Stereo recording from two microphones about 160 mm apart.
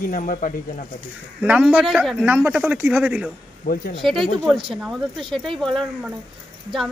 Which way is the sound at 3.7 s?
65° left (ahead or behind).